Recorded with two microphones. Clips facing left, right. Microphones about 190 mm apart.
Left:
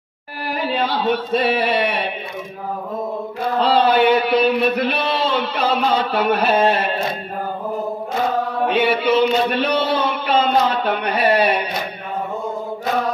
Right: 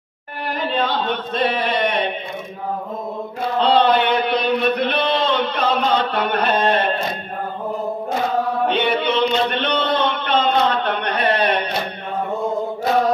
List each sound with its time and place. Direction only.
0.5 s a sound: 5° left (ahead or behind)
3.5 s chant: 5° left (ahead or behind)
8.6 s a man's voice: 5° left (ahead or behind)